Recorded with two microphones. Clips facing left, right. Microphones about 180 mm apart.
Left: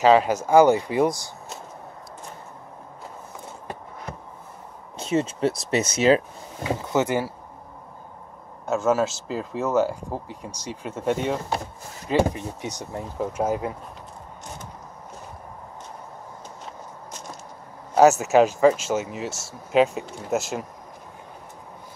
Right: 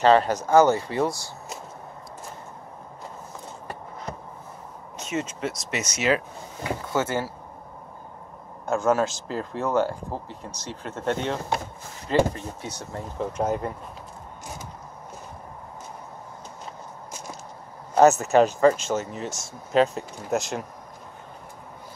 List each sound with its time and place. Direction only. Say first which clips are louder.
0.0 s speech: left 1 dB; 5° left (ahead or behind)
4.9 s speech: left 6 dB; 30° left (ahead or behind)
6.7 s speech: left 3 dB; 20° left (ahead or behind)
8.6 s speech: left 1 dB; 5° left (ahead or behind)
18.2 s speech: left 1 dB; 5° left (ahead or behind)